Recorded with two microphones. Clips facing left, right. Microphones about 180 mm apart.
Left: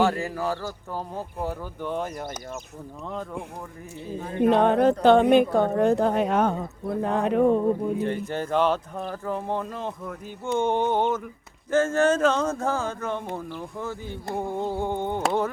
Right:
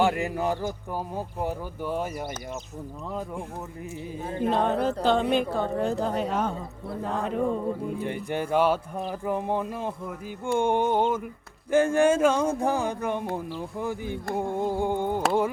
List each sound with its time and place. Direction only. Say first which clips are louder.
0.0 s speech: even; 20° right (ahead or behind)
4.4 s a woman's voice: left 6 dB; 65° left (ahead or behind)
8.0 s speech: left 2 dB; 15° right (ahead or behind)